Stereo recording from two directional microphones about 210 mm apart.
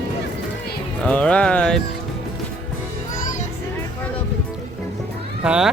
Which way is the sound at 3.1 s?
35° left (ahead or behind).